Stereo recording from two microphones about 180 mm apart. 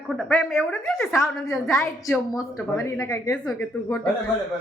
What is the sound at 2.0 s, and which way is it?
A woman's voice, 20° left (ahead or behind).